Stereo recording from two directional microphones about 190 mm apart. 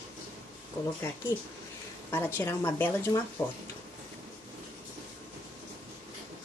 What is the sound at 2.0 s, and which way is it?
Speech, 15° left (ahead or behind).